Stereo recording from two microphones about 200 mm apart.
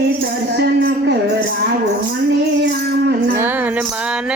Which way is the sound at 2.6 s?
60° right (ahead or behind).